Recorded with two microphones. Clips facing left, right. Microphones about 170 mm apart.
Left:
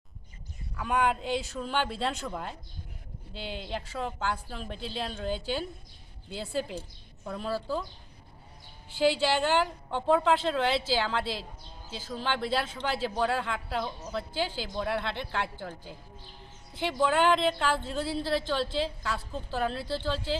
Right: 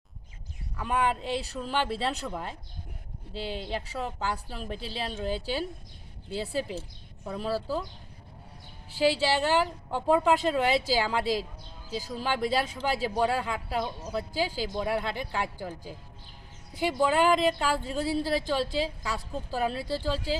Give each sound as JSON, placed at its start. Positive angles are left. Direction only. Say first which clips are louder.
{"t": 0.8, "sound": "a woman's voice", "louder": "even", "side_deg": 0}
{"t": 9.0, "sound": "a woman's voice", "louder": "even", "side_deg": -5}
{"t": 11.9, "sound": "speech", "louder": "right 6 dB", "side_deg": -40}
{"t": 12.1, "sound": "speech", "louder": "right 2 dB", "side_deg": -10}
{"t": 16.8, "sound": "speech", "louder": "right 1 dB", "side_deg": -5}